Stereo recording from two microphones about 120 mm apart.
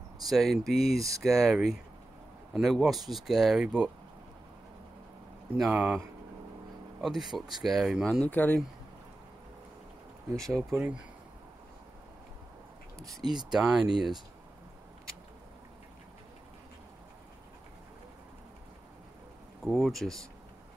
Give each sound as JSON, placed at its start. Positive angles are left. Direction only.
{"t": 0.2, "sound": "speech", "side_deg": 0}
{"t": 5.6, "sound": "speech", "side_deg": -10}
{"t": 7.0, "sound": "speech", "side_deg": 0}
{"t": 8.3, "sound": "speech", "side_deg": 15}
{"t": 10.3, "sound": "speech", "side_deg": 5}
{"t": 10.7, "sound": "speech", "side_deg": -15}
{"t": 13.2, "sound": "speech", "side_deg": -35}
{"t": 13.5, "sound": "speech", "side_deg": -5}
{"t": 19.6, "sound": "speech", "side_deg": 0}